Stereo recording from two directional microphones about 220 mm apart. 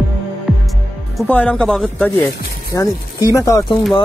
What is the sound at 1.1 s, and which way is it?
Speech, 5° left (ahead or behind).